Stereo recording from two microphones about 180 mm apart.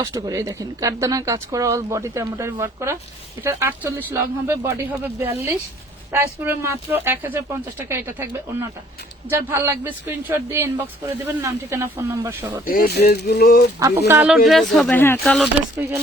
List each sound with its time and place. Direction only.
0.0 s speech: 20° right (ahead or behind)
9.5 s speech: 15° right (ahead or behind)
12.6 s speech: 55° left (ahead or behind)
13.7 s speech: 20° right (ahead or behind)
14.1 s speech: 5° right (ahead or behind); by 15.2 s 10° left (ahead or behind)
15.2 s speech: centre (ahead or behind)